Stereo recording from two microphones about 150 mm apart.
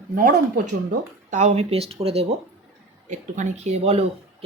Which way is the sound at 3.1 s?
55° right (ahead or behind).